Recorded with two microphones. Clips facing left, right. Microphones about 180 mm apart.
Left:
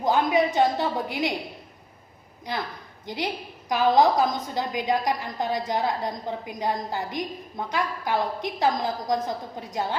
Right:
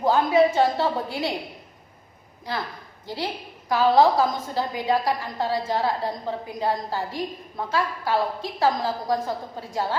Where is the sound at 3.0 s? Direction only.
20° left (ahead or behind).